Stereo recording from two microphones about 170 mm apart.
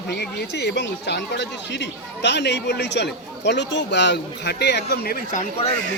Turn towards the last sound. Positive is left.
turn(degrees=50)  # may be behind; listen again after turning